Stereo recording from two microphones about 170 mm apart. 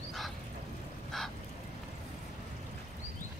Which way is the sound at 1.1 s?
Centre (ahead or behind).